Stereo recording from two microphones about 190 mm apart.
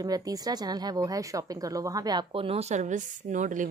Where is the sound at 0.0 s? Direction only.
20° right (ahead or behind).